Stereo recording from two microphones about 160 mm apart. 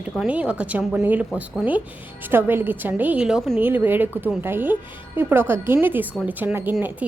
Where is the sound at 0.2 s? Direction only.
10° right (ahead or behind).